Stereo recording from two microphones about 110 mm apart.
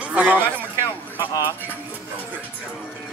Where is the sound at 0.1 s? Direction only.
15° right (ahead or behind).